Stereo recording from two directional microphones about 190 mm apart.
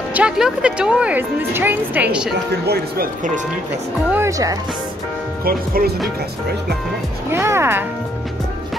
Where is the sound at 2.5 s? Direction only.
55° right (ahead or behind).